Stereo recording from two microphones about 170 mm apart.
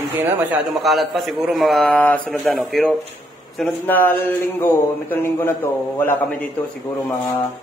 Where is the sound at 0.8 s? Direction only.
Centre (ahead or behind).